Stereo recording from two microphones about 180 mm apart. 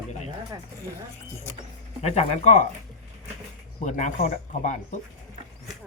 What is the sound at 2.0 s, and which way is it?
Speech, 35° left (ahead or behind).